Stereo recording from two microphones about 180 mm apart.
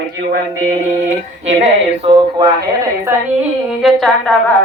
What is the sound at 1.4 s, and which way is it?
Speech, 35° right (ahead or behind).